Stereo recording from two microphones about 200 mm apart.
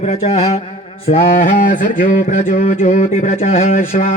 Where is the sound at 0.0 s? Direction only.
30° left (ahead or behind).